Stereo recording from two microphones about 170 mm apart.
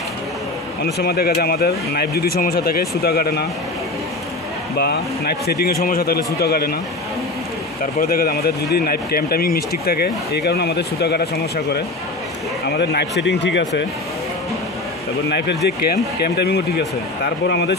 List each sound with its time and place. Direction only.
0.9 s speech: 70° left (ahead or behind)
4.7 s speech: 70° left (ahead or behind)
7.8 s speech: 55° left (ahead or behind); by 13.7 s 90° left
15.2 s speech: 75° left (ahead or behind)